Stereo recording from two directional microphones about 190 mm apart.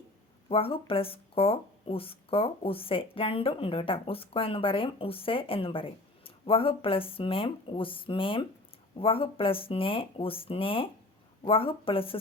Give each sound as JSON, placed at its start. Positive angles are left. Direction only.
{"t": 0.4, "sound": "speech", "side_deg": 30}